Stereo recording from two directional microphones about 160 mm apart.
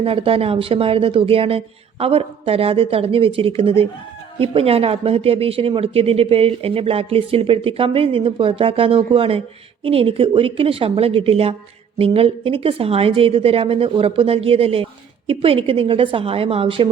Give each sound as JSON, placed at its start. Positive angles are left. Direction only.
{"t": 0.0, "sound": "speech", "side_deg": -35}